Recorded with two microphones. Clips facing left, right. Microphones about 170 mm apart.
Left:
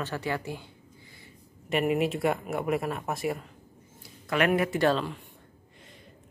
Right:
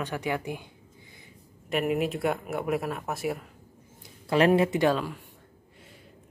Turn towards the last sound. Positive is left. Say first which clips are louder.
# even
turn(degrees=-10)  # may be behind; listen again after turning